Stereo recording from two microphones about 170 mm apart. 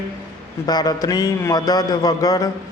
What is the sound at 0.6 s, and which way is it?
Mantra, 25° left (ahead or behind).